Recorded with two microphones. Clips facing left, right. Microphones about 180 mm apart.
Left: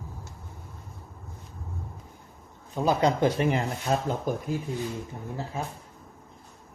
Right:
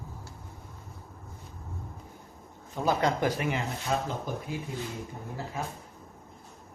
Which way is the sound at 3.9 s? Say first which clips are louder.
Left 4 dB; 45° left (ahead or behind).